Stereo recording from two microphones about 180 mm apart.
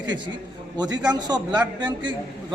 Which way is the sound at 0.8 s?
20° right (ahead or behind).